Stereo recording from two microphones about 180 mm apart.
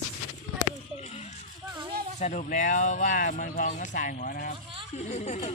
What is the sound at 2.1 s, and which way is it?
Speech, 40° left (ahead or behind).